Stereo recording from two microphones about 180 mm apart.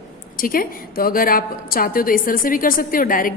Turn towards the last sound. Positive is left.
turn(degrees=50)  # may be behind; listen again after turning